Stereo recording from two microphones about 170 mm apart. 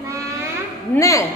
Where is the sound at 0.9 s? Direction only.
20° left (ahead or behind).